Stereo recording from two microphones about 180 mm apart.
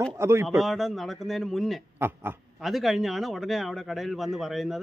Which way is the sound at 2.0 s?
10° right (ahead or behind).